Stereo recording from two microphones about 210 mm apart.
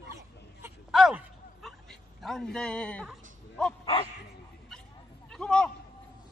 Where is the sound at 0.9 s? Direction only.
5° right (ahead or behind).